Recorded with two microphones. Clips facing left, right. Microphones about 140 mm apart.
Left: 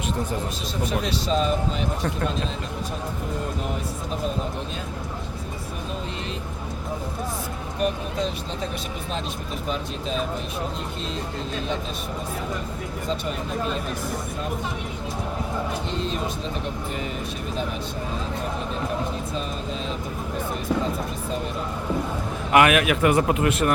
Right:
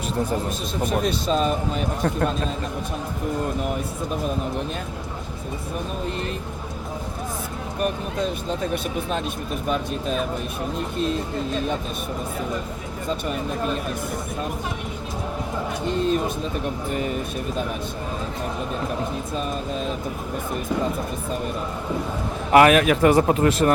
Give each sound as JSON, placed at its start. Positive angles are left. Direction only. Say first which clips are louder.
{"t": 0.9, "sound": "speech", "louder": "right 3 dB", "side_deg": -45}
{"t": 22.5, "sound": "speech", "louder": "right 3 dB", "side_deg": -35}